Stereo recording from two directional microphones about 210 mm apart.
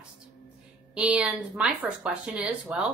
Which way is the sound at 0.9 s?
5° right (ahead or behind).